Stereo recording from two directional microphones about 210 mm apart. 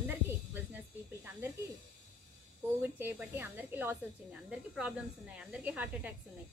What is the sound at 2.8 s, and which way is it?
A woman's voice, 10° right (ahead or behind).